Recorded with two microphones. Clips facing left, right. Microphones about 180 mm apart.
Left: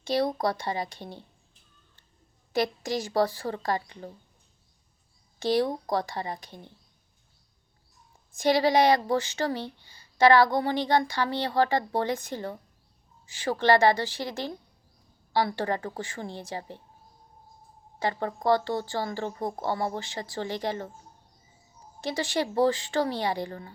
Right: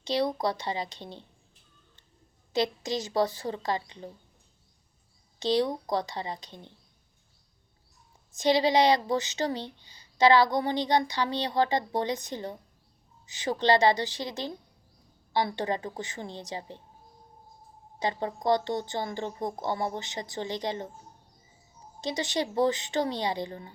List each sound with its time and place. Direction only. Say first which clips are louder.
0.0 s speech: left 1 dB; 50° left (ahead or behind)
0.9 s speech: left 1 dB; 20° right (ahead or behind)
2.5 s a woman's voice: left 1 dB; 20° right (ahead or behind)
5.4 s speech: left 1 dB; 20° right (ahead or behind)
8.3 s speech: left 1 dB; 20° right (ahead or behind)
18.0 s speech: left 1 dB; 20° right (ahead or behind)
22.0 s speech: left 1 dB; 20° right (ahead or behind)